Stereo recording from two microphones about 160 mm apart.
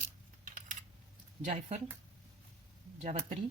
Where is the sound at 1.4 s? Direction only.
45° right (ahead or behind).